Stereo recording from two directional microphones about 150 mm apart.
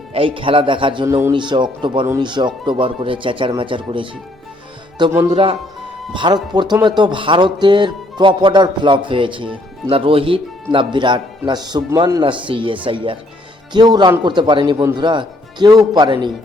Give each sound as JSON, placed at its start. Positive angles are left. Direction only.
{"t": 0.1, "sound": "speech", "side_deg": -35}
{"t": 1.0, "sound": "speech", "side_deg": -20}
{"t": 1.3, "sound": "speech", "side_deg": -30}
{"t": 5.3, "sound": "speech", "side_deg": -40}